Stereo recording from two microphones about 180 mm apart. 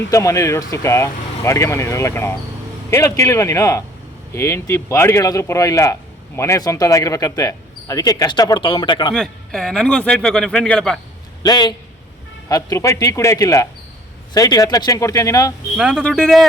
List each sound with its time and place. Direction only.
0.1 s speech: 15° left (ahead or behind)
9.1 s speech: centre (ahead or behind)
11.4 s speech: 20° left (ahead or behind)
15.7 s speech: 5° right (ahead or behind)
16.0 s speech: 5° left (ahead or behind)